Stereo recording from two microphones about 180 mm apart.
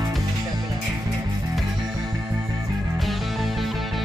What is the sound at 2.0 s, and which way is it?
Music, 20° right (ahead or behind).